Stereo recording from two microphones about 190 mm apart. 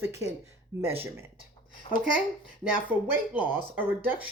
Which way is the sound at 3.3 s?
10° right (ahead or behind).